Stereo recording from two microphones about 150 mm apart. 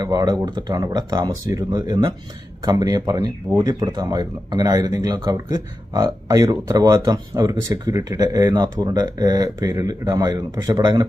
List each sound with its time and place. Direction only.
0.0 s speech: 25° right (ahead or behind)